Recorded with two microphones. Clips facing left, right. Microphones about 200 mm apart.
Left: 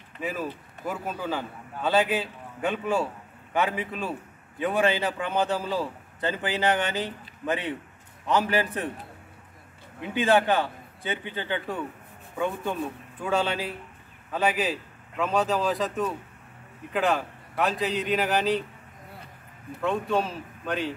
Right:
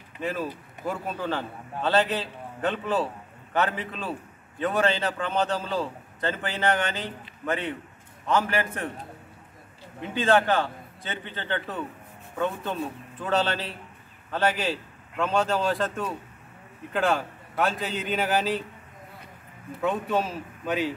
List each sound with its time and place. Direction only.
0.2 s a man's voice: 5° left (ahead or behind)
10.0 s a man's voice: 15° left (ahead or behind)
13.2 s a man's voice: 10° left (ahead or behind)
19.8 s a man's voice: 5° right (ahead or behind)